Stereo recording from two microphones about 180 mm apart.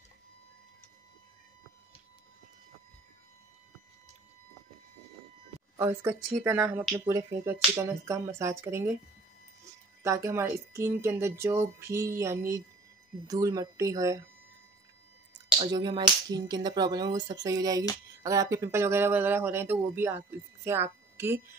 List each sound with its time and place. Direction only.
5.8 s speech: 15° right (ahead or behind)
10.0 s speech: 15° right (ahead or behind)
15.7 s speech: 25° right (ahead or behind)